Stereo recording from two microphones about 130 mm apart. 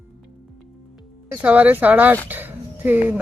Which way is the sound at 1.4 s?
10° right (ahead or behind).